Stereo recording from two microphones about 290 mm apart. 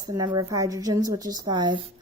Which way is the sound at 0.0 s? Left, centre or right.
Centre.